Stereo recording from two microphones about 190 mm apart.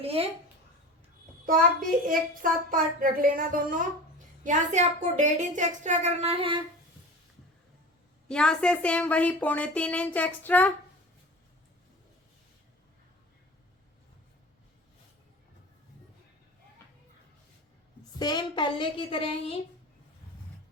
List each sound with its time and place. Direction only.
0.0 s a woman's voice: 30° right (ahead or behind)
1.5 s a child's voice: 45° right (ahead or behind); by 6.6 s 30° right (ahead or behind)
8.3 s speech: 5° left (ahead or behind)
18.2 s speech: 20° left (ahead or behind)